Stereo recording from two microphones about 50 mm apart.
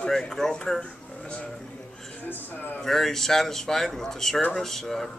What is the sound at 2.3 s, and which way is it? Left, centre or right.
Speech, left.